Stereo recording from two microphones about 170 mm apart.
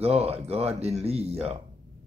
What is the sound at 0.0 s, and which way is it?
Speech, 35° right (ahead or behind).